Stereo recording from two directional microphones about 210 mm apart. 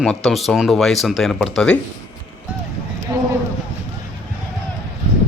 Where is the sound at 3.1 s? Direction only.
15° right (ahead or behind).